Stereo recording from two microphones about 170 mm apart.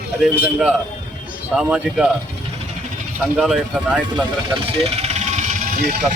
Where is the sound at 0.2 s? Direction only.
5° right (ahead or behind).